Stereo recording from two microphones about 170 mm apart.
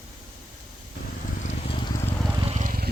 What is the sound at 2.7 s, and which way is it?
Vehicle, 65° right (ahead or behind).